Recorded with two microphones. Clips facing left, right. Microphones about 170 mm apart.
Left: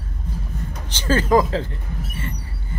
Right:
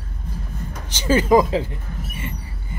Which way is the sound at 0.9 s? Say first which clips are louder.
Right 2 dB; 10° right (ahead or behind).